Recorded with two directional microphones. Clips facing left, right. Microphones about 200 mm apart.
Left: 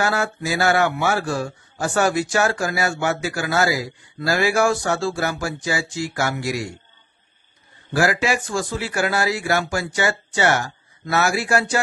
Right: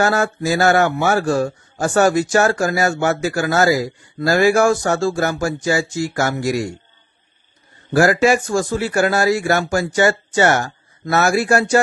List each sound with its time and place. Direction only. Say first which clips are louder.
0.0 s a man's voice: right 5 dB; 45° right (ahead or behind)
7.9 s a man's voice: right 6 dB; 45° right (ahead or behind)